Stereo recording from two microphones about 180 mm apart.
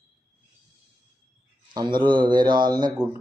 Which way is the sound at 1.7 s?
25° right (ahead or behind).